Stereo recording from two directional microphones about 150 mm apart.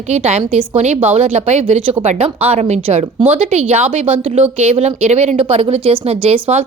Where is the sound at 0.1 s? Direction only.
45° right (ahead or behind).